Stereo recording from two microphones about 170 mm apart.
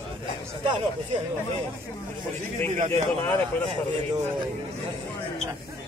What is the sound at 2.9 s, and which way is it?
Speech, 10° left (ahead or behind).